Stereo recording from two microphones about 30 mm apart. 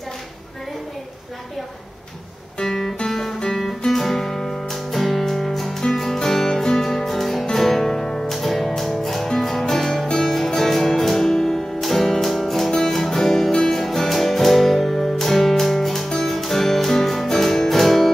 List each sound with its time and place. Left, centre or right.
2.6 s guitar: centre
3.1 s music: centre
8.3 s music: centre